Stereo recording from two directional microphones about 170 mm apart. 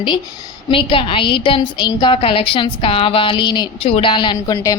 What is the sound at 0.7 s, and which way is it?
A woman's voice, 30° left (ahead or behind).